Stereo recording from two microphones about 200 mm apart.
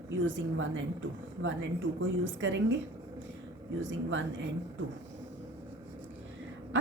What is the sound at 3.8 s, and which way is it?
Speech, 70° right (ahead or behind).